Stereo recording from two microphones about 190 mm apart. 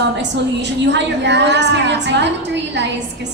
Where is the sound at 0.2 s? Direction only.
65° right (ahead or behind).